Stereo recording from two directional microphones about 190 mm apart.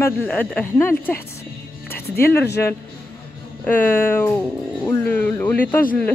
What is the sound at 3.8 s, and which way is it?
Speech, 10° left (ahead or behind).